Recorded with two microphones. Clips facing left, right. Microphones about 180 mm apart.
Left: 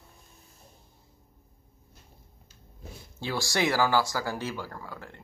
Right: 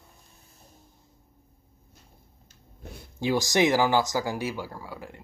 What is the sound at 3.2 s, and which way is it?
Speech, 15° right (ahead or behind).